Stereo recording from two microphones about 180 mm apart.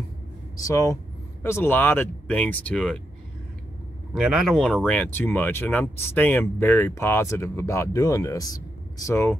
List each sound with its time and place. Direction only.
0.6 s speech: 20° left (ahead or behind)
4.1 s speech: centre (ahead or behind); by 9.4 s 15° left (ahead or behind)